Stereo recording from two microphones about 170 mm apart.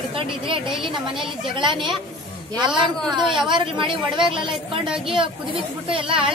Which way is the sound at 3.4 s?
30° right (ahead or behind).